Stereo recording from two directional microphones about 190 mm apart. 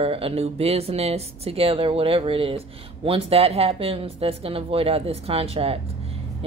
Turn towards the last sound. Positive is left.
turn(degrees=-30)  # may be behind; listen again after turning